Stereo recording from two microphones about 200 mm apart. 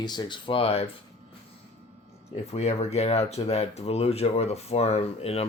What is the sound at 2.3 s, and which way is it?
Speech, 35° left (ahead or behind).